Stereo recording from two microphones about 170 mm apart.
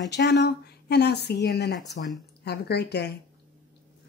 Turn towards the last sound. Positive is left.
turn(degrees=75)  # may be behind; listen again after turning